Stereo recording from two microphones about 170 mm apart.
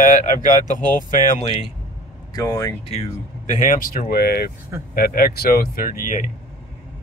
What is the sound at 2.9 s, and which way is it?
Speech, 40° left (ahead or behind).